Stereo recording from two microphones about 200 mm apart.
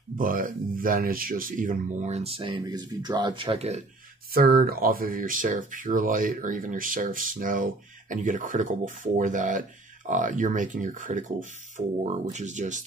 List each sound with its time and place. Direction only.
0.2 s speech: 45° right (ahead or behind)
4.3 s speech: 50° right (ahead or behind)